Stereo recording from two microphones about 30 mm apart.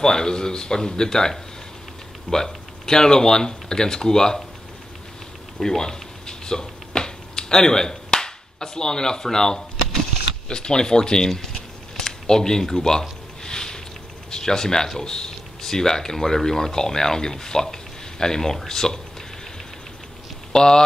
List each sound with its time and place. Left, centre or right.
0.0 s speech: left
2.3 s speech: left
5.8 s a sound: left
10.5 s speech: left
13.4 s a sound: left
14.3 s speech: centre
20.5 s speech: left